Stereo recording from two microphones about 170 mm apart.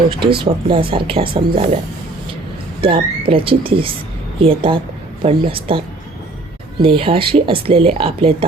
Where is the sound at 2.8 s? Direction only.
30° right (ahead or behind).